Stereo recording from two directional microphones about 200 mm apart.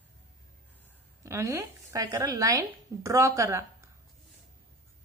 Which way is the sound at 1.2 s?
15° right (ahead or behind).